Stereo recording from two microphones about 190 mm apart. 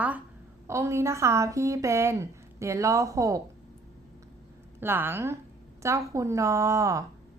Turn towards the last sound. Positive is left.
turn(degrees=-15)  # may be behind; listen again after turning